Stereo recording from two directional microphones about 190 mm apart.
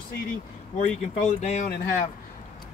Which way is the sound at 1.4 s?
35° left (ahead or behind).